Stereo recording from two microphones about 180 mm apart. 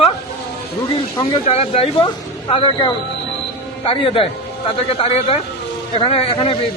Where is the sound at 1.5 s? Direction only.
35° left (ahead or behind).